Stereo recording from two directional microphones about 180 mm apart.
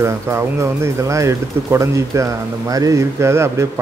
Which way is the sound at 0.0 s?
15° right (ahead or behind).